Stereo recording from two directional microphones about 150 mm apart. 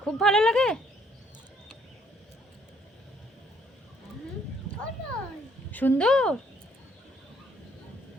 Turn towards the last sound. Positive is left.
turn(degrees=5)  # may be behind; listen again after turning